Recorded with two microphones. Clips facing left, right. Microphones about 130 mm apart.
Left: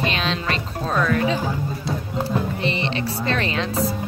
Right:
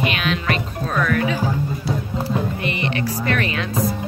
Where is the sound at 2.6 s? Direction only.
25° left (ahead or behind).